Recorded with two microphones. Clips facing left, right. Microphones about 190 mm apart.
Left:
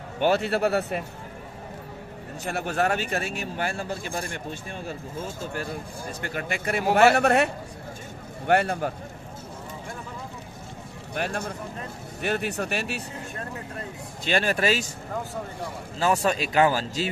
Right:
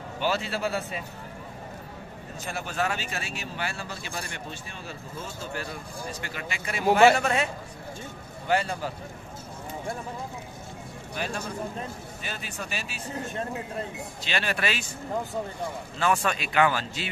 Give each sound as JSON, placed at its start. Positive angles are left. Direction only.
{"t": 0.2, "sound": "speech", "side_deg": 55}
{"t": 2.4, "sound": "speech", "side_deg": 60}
{"t": 11.1, "sound": "speech", "side_deg": 60}
{"t": 14.2, "sound": "speech", "side_deg": 45}
{"t": 16.0, "sound": "speech", "side_deg": 35}